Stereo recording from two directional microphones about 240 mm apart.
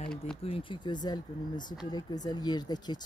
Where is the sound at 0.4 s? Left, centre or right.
Left.